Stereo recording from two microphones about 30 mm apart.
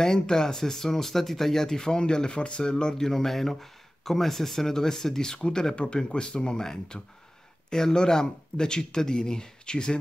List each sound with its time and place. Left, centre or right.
0.0 s speech: centre
1.9 s speech: left
3.0 s speech: centre; by 9.9 s left